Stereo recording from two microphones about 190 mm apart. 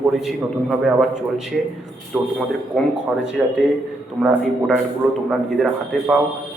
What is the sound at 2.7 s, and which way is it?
Speech, centre (ahead or behind).